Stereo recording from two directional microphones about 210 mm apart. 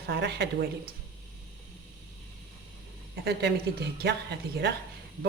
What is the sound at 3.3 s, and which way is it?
Speech, 50° right (ahead or behind).